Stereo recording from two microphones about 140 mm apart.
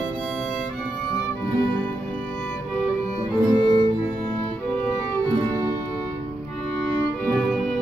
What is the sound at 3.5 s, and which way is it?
Music, 30° left (ahead or behind).